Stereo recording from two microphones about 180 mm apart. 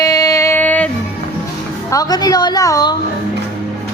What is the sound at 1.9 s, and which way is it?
A woman's voice, 20° left (ahead or behind).